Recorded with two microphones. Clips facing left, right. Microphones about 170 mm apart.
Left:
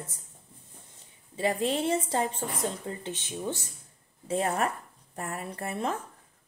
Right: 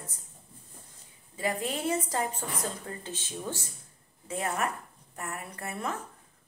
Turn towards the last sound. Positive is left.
turn(degrees=30)  # may be behind; listen again after turning